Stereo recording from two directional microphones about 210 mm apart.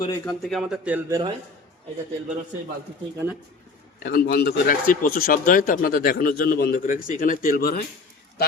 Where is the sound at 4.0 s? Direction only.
50° left (ahead or behind).